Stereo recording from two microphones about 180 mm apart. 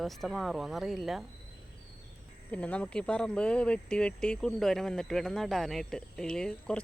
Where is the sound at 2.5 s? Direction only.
5° left (ahead or behind).